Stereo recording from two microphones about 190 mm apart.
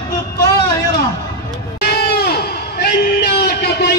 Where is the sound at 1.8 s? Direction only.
55° left (ahead or behind).